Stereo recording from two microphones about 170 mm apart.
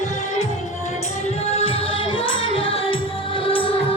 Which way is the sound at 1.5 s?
30° left (ahead or behind).